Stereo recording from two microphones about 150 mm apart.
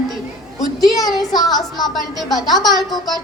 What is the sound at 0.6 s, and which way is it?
A woman's voice, centre (ahead or behind).